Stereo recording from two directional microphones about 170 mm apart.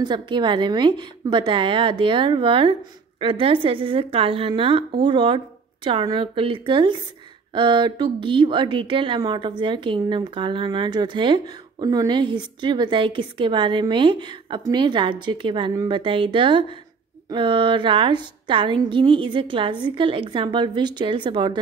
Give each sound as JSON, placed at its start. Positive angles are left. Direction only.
{"t": 0.0, "sound": "a woman's voice", "side_deg": -25}